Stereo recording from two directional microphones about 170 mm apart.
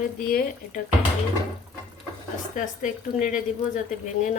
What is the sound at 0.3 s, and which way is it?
Speech, 55° left (ahead or behind).